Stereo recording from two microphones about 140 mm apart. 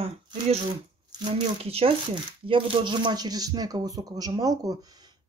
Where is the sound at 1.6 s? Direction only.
45° right (ahead or behind).